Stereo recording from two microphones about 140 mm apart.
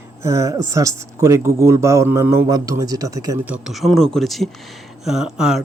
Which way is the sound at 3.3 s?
10° right (ahead or behind).